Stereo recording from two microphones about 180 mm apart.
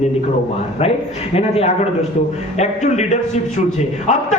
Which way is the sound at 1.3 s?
35° left (ahead or behind).